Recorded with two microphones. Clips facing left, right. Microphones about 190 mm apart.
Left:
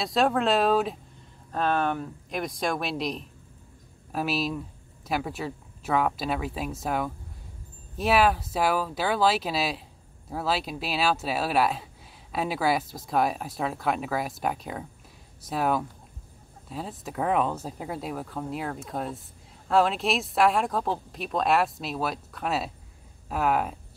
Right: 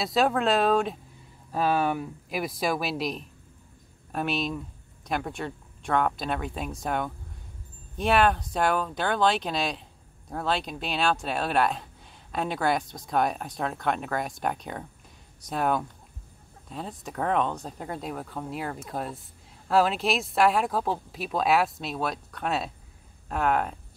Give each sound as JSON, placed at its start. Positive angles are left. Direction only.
{"t": 0.0, "sound": "speech", "side_deg": 0}